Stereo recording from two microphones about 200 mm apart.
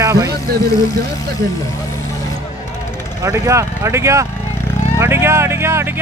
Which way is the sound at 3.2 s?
15° right (ahead or behind).